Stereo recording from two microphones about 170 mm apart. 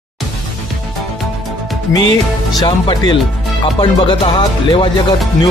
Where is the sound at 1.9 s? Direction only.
25° left (ahead or behind).